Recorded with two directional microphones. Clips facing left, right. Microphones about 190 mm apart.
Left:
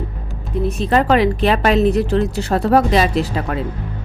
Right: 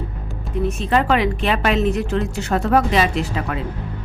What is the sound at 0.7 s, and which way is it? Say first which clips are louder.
A woman's voice: left 4 dB; 35° left (ahead or behind).